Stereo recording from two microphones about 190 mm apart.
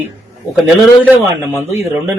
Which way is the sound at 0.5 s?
5° right (ahead or behind).